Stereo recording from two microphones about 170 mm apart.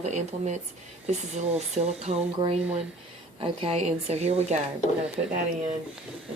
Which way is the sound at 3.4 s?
35° right (ahead or behind).